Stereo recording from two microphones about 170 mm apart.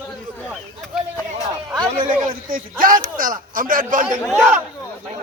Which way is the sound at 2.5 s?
55° right (ahead or behind).